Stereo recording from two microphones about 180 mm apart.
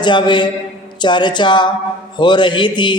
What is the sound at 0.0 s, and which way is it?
A man's voice, 25° left (ahead or behind).